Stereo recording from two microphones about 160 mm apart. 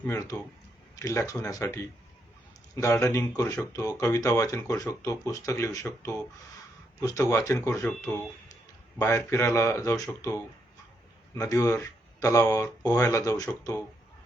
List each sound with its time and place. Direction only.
0.0 s speech: 15° left (ahead or behind)